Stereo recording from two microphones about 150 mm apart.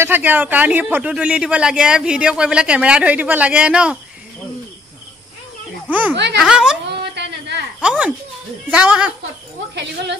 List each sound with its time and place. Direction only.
0.0 s speech: 10° right (ahead or behind)
5.9 s speech: 10° right (ahead or behind)
7.0 s a sound: 90° right
7.8 s speech: 5° right (ahead or behind)